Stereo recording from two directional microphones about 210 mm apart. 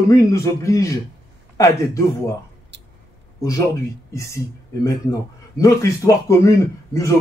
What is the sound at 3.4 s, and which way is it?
A man's voice, 15° left (ahead or behind).